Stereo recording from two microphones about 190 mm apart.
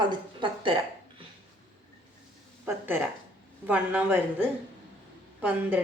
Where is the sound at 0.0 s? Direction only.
25° right (ahead or behind).